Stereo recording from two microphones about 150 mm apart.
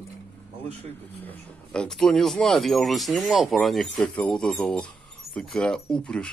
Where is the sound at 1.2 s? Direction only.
10° left (ahead or behind).